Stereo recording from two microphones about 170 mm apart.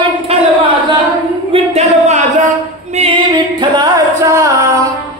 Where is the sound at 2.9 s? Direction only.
30° right (ahead or behind).